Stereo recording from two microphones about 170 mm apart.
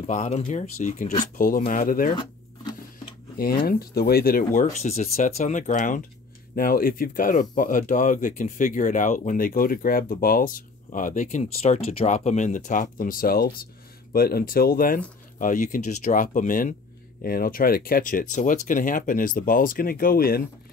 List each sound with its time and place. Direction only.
0.0 s speech: 45° left (ahead or behind)
3.6 s speech: 65° left (ahead or behind)
11.4 s speech: 35° left (ahead or behind); by 15.0 s 60° left (ahead or behind)
15.3 s speech: 50° left (ahead or behind)